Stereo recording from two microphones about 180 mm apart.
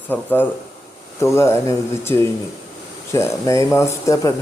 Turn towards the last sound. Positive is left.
turn(degrees=15)  # may be behind; listen again after turning